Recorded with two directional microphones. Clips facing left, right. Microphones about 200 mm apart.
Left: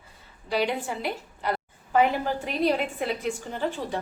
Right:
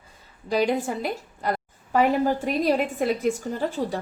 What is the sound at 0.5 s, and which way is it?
A woman's voice, 45° right (ahead or behind).